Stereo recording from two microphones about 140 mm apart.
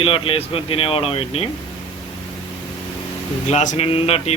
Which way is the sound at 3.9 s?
45° left (ahead or behind).